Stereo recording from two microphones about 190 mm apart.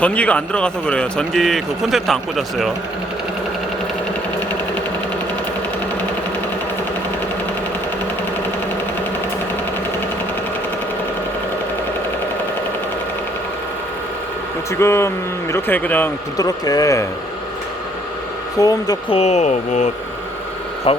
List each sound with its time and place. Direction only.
0.0 s a man's voice: 5° left (ahead or behind)
14.8 s speech: 15° left (ahead or behind)
18.6 s speech: 20° left (ahead or behind)
19.1 s speech: 35° left (ahead or behind)